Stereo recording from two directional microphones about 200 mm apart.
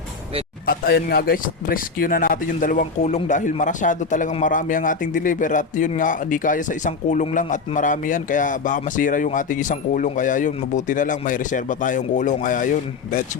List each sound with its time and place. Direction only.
0.7 s speech: 50° left (ahead or behind)